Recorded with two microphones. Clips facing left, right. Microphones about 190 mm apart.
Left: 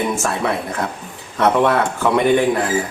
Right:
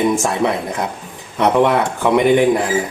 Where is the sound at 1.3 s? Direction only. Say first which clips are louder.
Right 1 dB; 15° right (ahead or behind).